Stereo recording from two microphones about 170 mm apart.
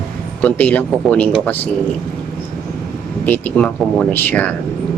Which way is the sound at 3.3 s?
10° left (ahead or behind).